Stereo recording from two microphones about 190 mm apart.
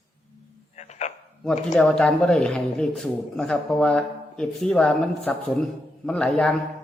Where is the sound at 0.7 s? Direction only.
35° left (ahead or behind).